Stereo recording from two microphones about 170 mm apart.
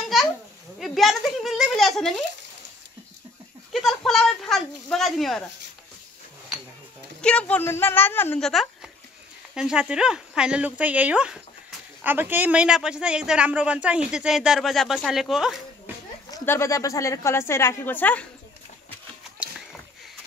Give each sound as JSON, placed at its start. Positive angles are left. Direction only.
{"t": 0.7, "sound": "a sound", "side_deg": 0}
{"t": 3.7, "sound": "a sound", "side_deg": 0}
{"t": 7.2, "sound": "speech", "side_deg": 5}
{"t": 8.4, "sound": "speech", "side_deg": 0}
{"t": 15.9, "sound": "children playing", "side_deg": -10}
{"t": 16.3, "sound": "speech", "side_deg": 20}